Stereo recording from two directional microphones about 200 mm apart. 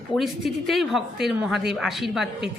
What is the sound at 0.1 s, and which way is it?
Speech, centre (ahead or behind).